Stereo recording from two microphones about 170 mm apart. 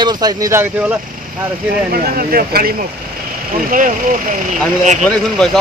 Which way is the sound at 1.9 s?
60° right (ahead or behind).